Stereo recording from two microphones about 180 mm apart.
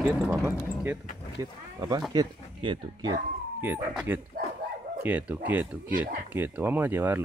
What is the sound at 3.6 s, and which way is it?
Speech, 10° right (ahead or behind).